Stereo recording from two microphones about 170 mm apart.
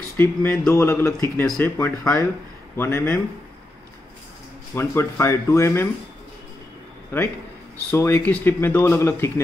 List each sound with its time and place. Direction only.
0.2 s speech: 10° left (ahead or behind)
4.7 s speech: 15° left (ahead or behind)
7.9 s speech: 10° left (ahead or behind)